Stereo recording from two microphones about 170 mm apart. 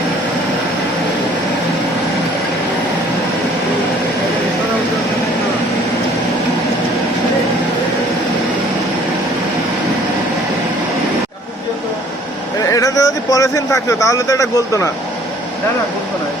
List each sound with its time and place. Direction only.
12.7 s speech: 20° left (ahead or behind)